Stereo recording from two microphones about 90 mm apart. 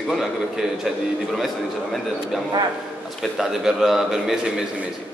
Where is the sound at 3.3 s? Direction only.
5° right (ahead or behind).